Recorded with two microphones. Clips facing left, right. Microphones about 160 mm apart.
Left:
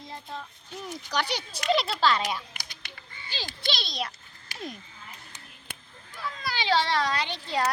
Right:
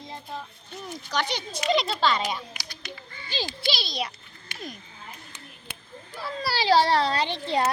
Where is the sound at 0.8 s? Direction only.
10° left (ahead or behind).